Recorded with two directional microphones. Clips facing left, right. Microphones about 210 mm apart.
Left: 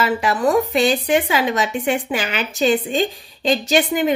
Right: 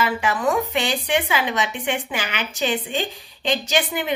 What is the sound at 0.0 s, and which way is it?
A woman's voice, 35° left (ahead or behind).